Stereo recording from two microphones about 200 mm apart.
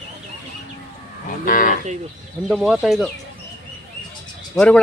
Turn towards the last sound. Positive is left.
turn(degrees=5)  # may be behind; listen again after turning